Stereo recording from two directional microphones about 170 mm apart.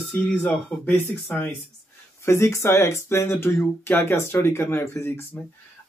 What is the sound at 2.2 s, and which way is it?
Speech, 15° left (ahead or behind).